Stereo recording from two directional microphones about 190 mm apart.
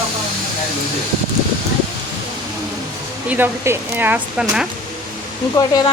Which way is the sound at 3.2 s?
10° right (ahead or behind).